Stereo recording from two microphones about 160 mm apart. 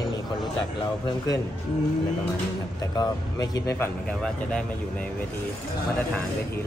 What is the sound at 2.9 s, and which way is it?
Speech, 25° left (ahead or behind).